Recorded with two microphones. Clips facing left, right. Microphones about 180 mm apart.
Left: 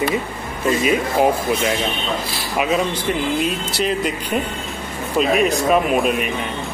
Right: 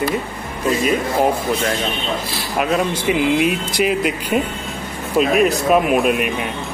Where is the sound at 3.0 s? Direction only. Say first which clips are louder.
Right 4 dB; 10° right (ahead or behind).